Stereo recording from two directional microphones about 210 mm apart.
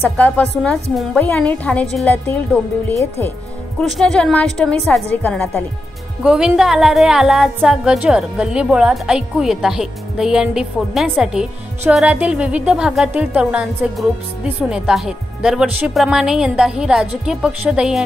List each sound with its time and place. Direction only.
0.0 s a woman's voice: 10° left (ahead or behind)